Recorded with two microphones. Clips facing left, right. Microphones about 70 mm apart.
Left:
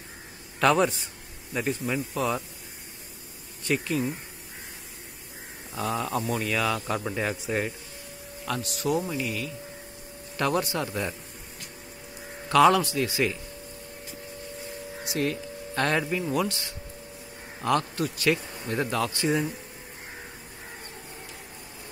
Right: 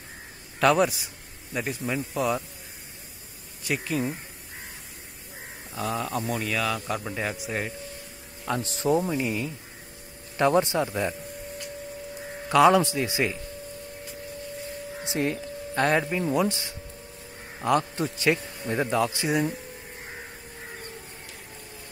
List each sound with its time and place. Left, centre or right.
0.6 s a man's voice: centre
3.6 s a man's voice: centre
5.8 s a man's voice: centre
8.6 s a man's voice: right
12.4 s a man's voice: centre
15.0 s speech: centre